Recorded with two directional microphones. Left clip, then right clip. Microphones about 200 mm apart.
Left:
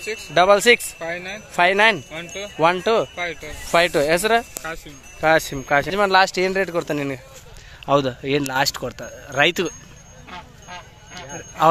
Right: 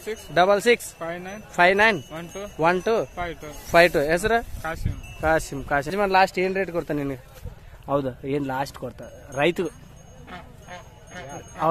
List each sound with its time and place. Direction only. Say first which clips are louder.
0.3 s speech: left 4 dB; centre (ahead or behind)
0.9 s speech: left 4 dB; 50° right (ahead or behind)
1.5 s speech: left 2 dB; 5° right (ahead or behind)
2.0 s speech: left 4 dB; 50° right (ahead or behind)
2.6 s speech: left 4 dB; centre (ahead or behind)
10.3 s vehicle: left 4 dB; 55° right (ahead or behind)